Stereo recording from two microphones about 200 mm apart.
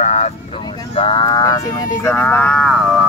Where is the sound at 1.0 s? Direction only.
25° left (ahead or behind); by 3.0 s centre (ahead or behind).